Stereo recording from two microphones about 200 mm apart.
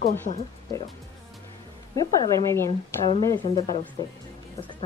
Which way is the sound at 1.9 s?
15° left (ahead or behind).